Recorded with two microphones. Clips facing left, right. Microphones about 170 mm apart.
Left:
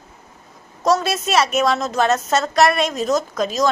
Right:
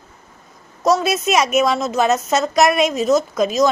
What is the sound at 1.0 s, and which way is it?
A woman's voice, 10° right (ahead or behind).